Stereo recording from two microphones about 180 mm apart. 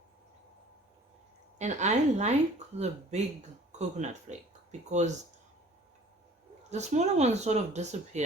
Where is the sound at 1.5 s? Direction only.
40° right (ahead or behind).